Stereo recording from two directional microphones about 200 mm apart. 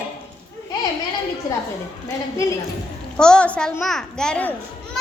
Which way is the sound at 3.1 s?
5° left (ahead or behind).